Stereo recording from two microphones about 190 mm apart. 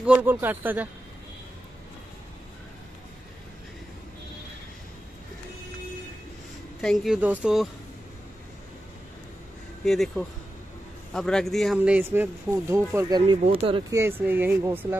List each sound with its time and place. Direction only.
0.0 s speech: 10° right (ahead or behind)
6.8 s speech: centre (ahead or behind)
9.8 s speech: centre (ahead or behind); by 13.2 s 15° right (ahead or behind)
13.2 s speech: 30° right (ahead or behind)
14.2 s speech: 10° right (ahead or behind)